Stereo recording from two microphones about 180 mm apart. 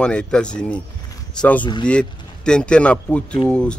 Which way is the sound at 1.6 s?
25° left (ahead or behind).